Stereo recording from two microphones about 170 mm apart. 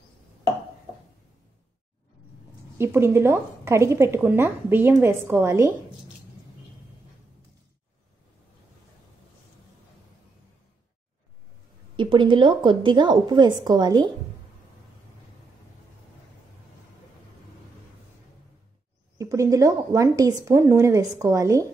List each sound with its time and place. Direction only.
2.8 s a woman's voice: 15° right (ahead or behind)
12.0 s a woman's voice: 30° right (ahead or behind)
19.1 s a woman's voice: 20° right (ahead or behind)